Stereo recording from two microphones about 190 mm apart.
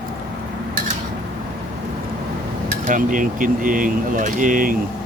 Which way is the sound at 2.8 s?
45° right (ahead or behind).